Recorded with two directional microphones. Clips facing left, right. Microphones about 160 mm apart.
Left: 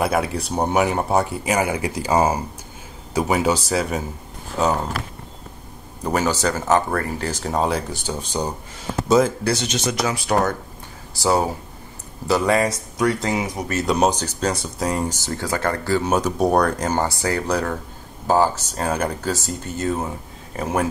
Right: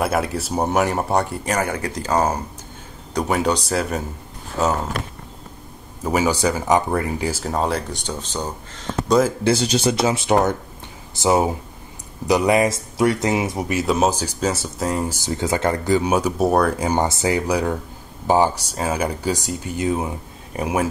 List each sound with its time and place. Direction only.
0.0 s speech: centre (ahead or behind)
6.0 s speech: 10° right (ahead or behind)
9.4 s speech: 30° right (ahead or behind)
13.7 s speech: 5° right (ahead or behind)
15.1 s speech: 15° right (ahead or behind)